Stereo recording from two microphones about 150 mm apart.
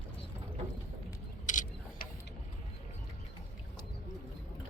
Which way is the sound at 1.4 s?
55° left (ahead or behind).